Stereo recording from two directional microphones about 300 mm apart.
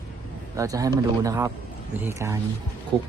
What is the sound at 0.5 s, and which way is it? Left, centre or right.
Speech, centre.